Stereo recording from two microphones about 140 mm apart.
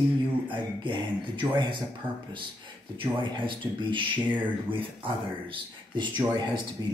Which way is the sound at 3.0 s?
35° right (ahead or behind).